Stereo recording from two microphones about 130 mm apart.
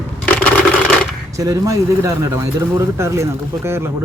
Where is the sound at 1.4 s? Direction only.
25° right (ahead or behind).